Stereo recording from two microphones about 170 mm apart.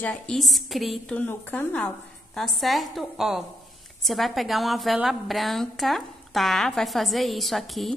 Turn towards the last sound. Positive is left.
turn(degrees=0)  # may be behind; listen again after turning